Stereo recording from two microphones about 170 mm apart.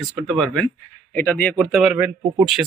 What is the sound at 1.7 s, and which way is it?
Speech, 5° right (ahead or behind).